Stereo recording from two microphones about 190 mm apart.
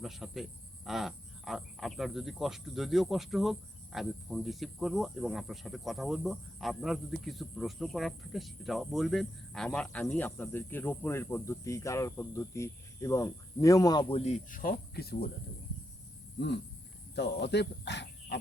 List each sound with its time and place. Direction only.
0.0 s speech: centre (ahead or behind); by 14.2 s 20° left (ahead or behind)
14.2 s speech: 40° left (ahead or behind); by 15.3 s 55° left (ahead or behind)
17.2 s speech: 60° left (ahead or behind)